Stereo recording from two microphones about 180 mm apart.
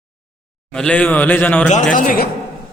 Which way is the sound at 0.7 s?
5° left (ahead or behind).